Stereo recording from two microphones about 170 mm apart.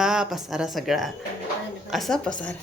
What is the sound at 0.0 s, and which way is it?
A woman's voice, 5° right (ahead or behind).